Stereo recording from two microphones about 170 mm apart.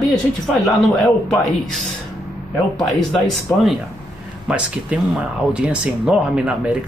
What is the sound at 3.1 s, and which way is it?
Speech, centre (ahead or behind).